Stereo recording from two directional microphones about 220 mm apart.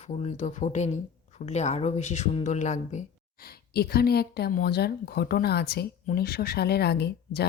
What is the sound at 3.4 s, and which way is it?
Speech, 45° left (ahead or behind).